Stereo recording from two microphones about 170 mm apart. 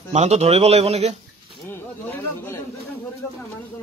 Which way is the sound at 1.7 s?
15° left (ahead or behind).